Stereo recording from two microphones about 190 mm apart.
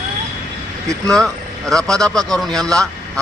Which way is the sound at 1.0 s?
Centre (ahead or behind).